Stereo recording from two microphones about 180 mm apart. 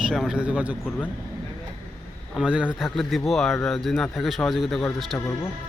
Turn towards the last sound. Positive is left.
turn(degrees=0)  # may be behind; listen again after turning